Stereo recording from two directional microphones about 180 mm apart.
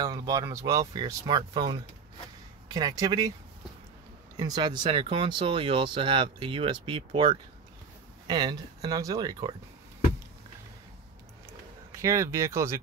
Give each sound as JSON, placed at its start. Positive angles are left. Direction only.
{"t": 0.0, "sound": "speech", "side_deg": -20}
{"t": 4.4, "sound": "speech", "side_deg": -25}
{"t": 11.9, "sound": "speech", "side_deg": -15}